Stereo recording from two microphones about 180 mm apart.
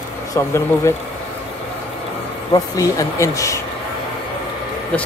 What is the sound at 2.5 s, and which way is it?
Speech, 20° left (ahead or behind).